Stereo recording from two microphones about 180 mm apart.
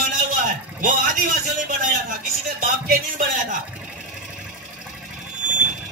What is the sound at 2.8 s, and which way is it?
Music, 50° right (ahead or behind).